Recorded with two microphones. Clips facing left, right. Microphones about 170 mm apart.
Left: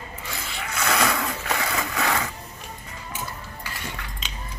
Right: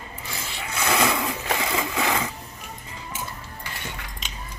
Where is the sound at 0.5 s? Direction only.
25° right (ahead or behind).